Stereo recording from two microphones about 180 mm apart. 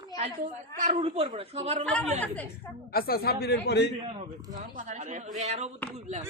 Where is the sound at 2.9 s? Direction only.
55° left (ahead or behind).